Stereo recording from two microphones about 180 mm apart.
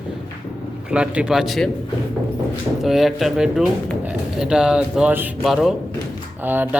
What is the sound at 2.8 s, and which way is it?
Speech, centre (ahead or behind).